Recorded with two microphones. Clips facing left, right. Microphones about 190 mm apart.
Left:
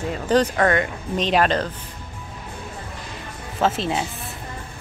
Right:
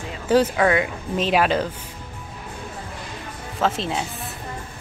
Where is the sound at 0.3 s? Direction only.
5° right (ahead or behind).